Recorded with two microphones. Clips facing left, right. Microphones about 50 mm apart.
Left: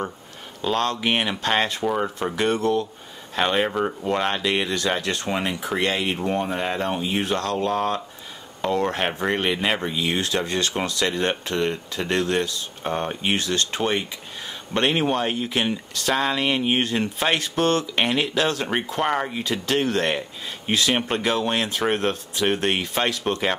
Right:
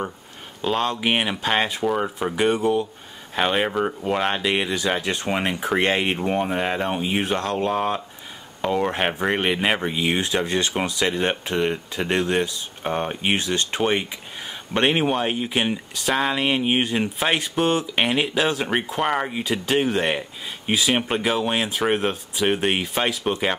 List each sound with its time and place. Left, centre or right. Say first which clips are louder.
0.6 s speech: even; centre
5.4 s speech: right 2 dB; right
6.1 s speech: right 2 dB; centre